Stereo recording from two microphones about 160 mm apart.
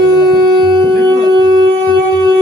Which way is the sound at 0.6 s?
30° right (ahead or behind).